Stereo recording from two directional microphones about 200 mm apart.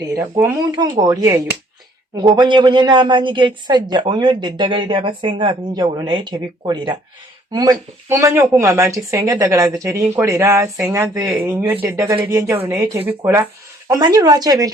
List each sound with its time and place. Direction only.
0.2 s speech: 5° right (ahead or behind)
0.8 s a woman's voice: 20° right (ahead or behind)